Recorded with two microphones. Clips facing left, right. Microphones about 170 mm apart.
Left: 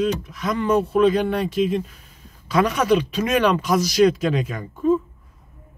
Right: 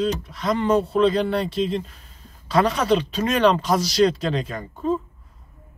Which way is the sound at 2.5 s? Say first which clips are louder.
Left 1 dB; 30° right (ahead or behind).